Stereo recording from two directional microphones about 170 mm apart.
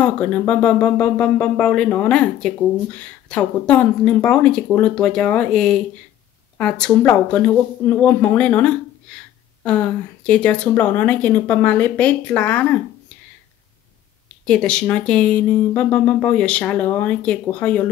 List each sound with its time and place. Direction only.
0.0 s speech: 10° left (ahead or behind)
14.4 s speech: 5° left (ahead or behind)